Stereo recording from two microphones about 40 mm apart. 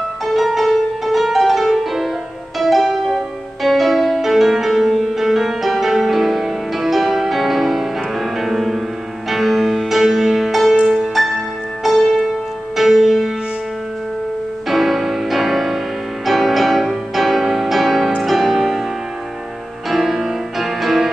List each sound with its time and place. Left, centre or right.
0.3 s music: centre
10.8 s music: centre
11.8 s music: centre
14.7 s music: centre
19.9 s music: centre